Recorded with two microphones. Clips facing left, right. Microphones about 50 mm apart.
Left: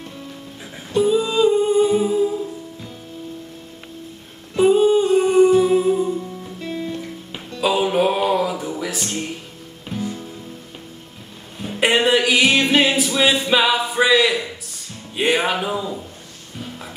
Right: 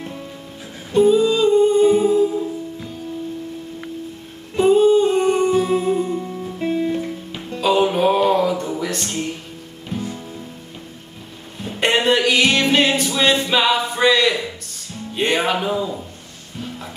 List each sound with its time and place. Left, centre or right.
0.9 s humming: centre
4.6 s music: centre
5.0 s humming: centre
5.9 s music: right
6.6 s music: right
7.6 s music: centre
11.6 s music: centre